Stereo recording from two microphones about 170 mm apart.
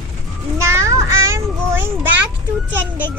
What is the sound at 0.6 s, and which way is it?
Child singing, 15° right (ahead or behind).